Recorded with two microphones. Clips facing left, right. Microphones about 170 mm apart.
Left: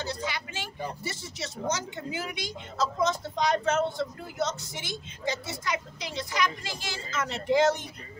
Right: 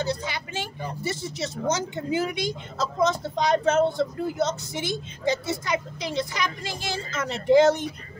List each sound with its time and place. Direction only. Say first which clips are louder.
0.0 s speech: right 5 dB; 25° right (ahead or behind)